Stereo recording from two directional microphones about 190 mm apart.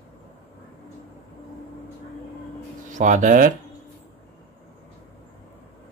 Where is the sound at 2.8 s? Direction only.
40° right (ahead or behind).